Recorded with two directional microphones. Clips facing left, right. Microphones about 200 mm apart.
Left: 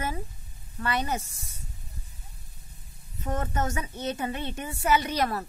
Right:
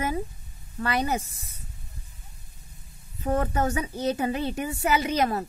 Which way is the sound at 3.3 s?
30° right (ahead or behind).